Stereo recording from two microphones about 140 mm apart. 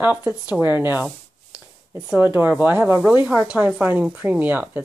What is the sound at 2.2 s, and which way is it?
A woman's voice, 15° right (ahead or behind).